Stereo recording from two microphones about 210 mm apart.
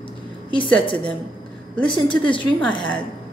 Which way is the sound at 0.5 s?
25° left (ahead or behind).